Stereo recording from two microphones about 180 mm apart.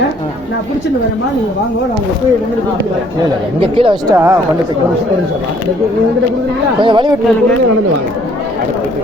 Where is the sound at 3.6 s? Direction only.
30° right (ahead or behind).